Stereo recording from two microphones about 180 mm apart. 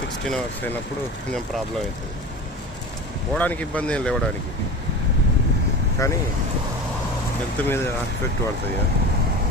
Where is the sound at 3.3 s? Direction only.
10° left (ahead or behind).